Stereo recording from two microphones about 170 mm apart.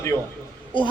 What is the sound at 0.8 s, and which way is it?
Speech, 30° left (ahead or behind).